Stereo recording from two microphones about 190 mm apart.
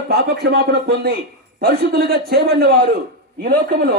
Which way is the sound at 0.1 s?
60° right (ahead or behind).